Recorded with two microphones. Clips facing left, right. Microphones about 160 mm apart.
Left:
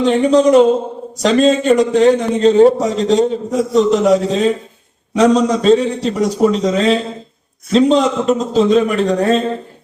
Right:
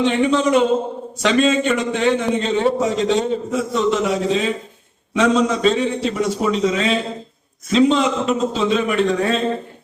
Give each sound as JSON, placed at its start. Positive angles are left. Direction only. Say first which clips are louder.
{"t": 0.0, "sound": "a man's voice", "louder": "left 6 dB", "side_deg": 40}